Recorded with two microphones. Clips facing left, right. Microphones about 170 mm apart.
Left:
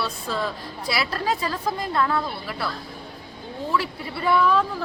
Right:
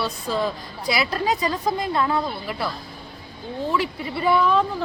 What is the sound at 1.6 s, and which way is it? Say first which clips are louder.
Speech: right 2 dB; 15° right (ahead or behind).